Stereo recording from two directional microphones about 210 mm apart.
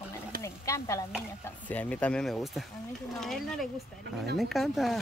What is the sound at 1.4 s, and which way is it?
Speech, 5° left (ahead or behind).